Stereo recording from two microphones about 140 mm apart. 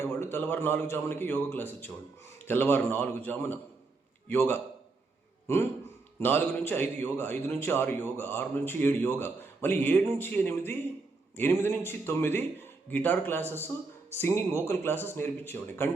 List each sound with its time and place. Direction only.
0.0 s a man's voice: 15° left (ahead or behind)
6.1 s a man's voice: 15° left (ahead or behind)